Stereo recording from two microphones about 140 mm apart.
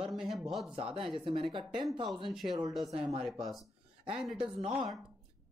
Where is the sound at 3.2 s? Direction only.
Centre (ahead or behind).